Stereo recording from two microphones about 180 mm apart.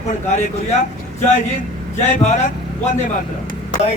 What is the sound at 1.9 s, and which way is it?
Speech, 40° left (ahead or behind).